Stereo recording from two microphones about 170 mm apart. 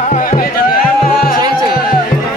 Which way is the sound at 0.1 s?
50° left (ahead or behind).